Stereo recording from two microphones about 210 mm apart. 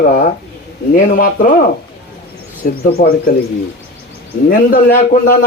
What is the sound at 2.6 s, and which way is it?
Speech, 40° left (ahead or behind).